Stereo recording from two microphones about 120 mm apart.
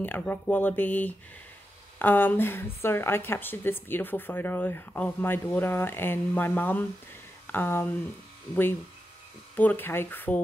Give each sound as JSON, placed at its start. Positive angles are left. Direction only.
{"t": 0.0, "sound": "a woman's voice", "side_deg": 15}
{"t": 9.6, "sound": "a woman's voice", "side_deg": 15}